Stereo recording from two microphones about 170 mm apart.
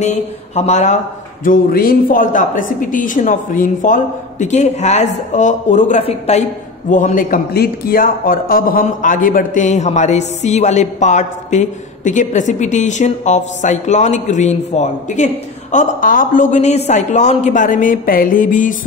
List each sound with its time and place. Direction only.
0.0 s a man's voice: 40° left (ahead or behind)
1.4 s a man's voice: 55° left (ahead or behind)